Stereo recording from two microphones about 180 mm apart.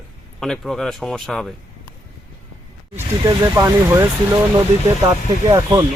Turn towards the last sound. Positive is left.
turn(degrees=-20)  # may be behind; listen again after turning